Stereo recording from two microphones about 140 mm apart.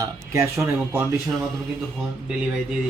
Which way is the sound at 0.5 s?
15° right (ahead or behind).